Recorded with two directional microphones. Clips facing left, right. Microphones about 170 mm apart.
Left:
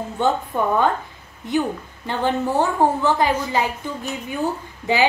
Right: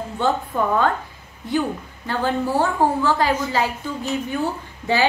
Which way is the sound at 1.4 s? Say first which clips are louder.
Left 1 dB; 20° left (ahead or behind).